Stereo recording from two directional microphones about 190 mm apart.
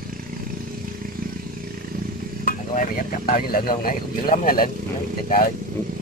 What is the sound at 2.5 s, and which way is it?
Speech, 50° left (ahead or behind).